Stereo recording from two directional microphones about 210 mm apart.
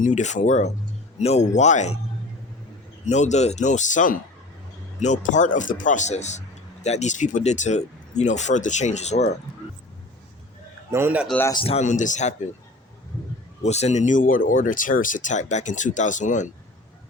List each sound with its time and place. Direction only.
0.0 s speech: 35° left (ahead or behind)
3.1 s speech: 35° left (ahead or behind)
10.9 s speech: 10° right (ahead or behind)
11.3 s speech: 15° left (ahead or behind)
11.6 s speech: 30° left (ahead or behind)
13.6 s speech: 30° left (ahead or behind)